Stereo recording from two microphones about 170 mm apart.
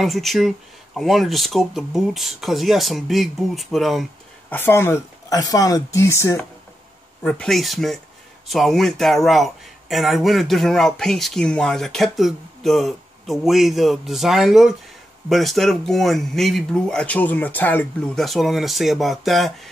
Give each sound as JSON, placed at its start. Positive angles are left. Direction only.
{"t": 0.0, "sound": "speech", "side_deg": 0}
{"t": 4.5, "sound": "speech", "side_deg": 15}
{"t": 7.2, "sound": "speech", "side_deg": 5}